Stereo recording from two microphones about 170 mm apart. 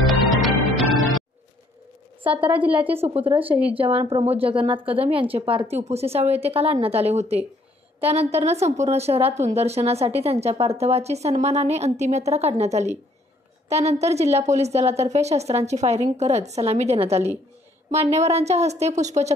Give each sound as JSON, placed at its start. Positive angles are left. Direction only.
{"t": 0.0, "sound": "music", "side_deg": 0}
{"t": 2.4, "sound": "a woman's voice", "side_deg": -10}
{"t": 3.2, "sound": "a woman's voice", "side_deg": -30}